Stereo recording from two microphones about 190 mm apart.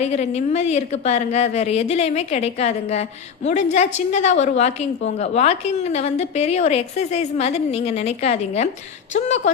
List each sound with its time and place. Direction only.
0.0 s a woman's voice: 35° left (ahead or behind)